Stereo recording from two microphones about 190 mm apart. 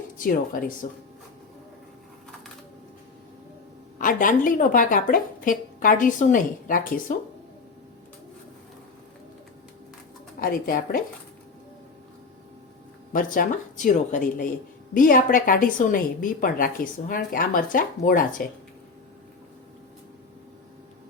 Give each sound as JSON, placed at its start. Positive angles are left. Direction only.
{"t": 0.8, "sound": "a woman's voice", "side_deg": 45}
{"t": 3.9, "sound": "a woman's voice", "side_deg": 45}
{"t": 10.4, "sound": "a woman's voice", "side_deg": 50}
{"t": 13.1, "sound": "a woman's voice", "side_deg": 45}